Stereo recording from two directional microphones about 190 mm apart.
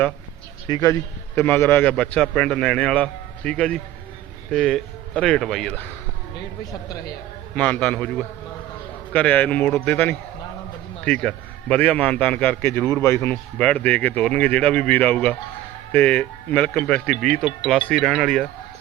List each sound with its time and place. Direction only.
0.7 s a man's voice: 15° left (ahead or behind)
6.8 s a man's voice: 20° left (ahead or behind)
7.5 s a man's voice: 5° left (ahead or behind)
9.1 s a man's voice: 5° left (ahead or behind)